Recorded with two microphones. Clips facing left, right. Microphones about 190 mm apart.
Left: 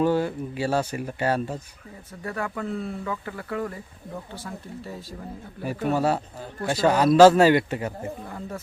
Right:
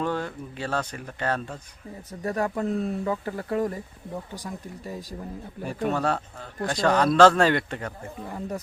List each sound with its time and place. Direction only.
0.0 s speech: 5° left (ahead or behind)
2.2 s speech: 40° right (ahead or behind)
5.6 s speech: 5° left (ahead or behind)